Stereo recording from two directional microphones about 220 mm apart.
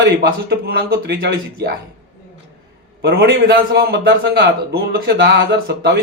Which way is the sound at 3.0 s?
45° right (ahead or behind).